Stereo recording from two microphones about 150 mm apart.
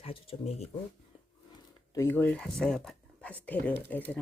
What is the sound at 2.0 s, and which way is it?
Speech, 15° left (ahead or behind).